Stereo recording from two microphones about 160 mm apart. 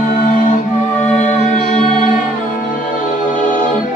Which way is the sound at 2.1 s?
60° left (ahead or behind).